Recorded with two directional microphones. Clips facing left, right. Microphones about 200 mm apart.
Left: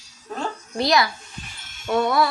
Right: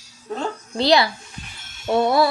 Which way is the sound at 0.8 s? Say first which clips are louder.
Right 3 dB; 30° right (ahead or behind).